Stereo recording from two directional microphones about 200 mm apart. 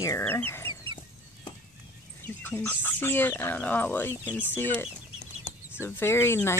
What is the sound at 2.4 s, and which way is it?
Speech, 10° left (ahead or behind).